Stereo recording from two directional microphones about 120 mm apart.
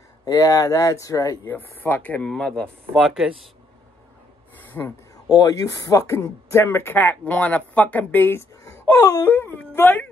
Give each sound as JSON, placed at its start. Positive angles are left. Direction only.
{"t": 0.2, "sound": "speech", "side_deg": 30}
{"t": 1.5, "sound": "speech", "side_deg": 15}
{"t": 4.6, "sound": "a sound", "side_deg": 15}
{"t": 5.1, "sound": "speech", "side_deg": 30}